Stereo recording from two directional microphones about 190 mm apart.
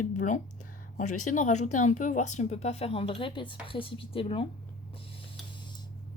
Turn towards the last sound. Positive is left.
turn(degrees=30)  # may be behind; listen again after turning